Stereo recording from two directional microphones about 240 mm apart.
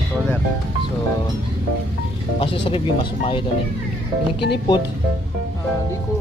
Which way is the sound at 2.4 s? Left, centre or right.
Left.